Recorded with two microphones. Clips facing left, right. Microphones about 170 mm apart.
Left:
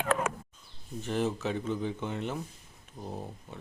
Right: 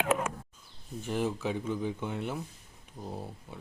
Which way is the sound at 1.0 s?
10° right (ahead or behind).